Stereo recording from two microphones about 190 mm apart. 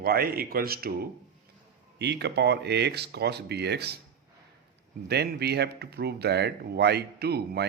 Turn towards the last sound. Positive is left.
turn(degrees=-60)  # may be behind; listen again after turning